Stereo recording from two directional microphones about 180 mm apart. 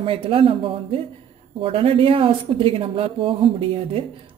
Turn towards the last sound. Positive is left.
turn(degrees=-30)  # may be behind; listen again after turning